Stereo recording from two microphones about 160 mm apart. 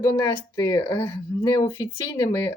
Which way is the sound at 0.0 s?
20° left (ahead or behind).